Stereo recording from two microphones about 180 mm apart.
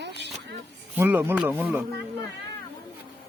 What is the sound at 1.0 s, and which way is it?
Speech, 10° right (ahead or behind).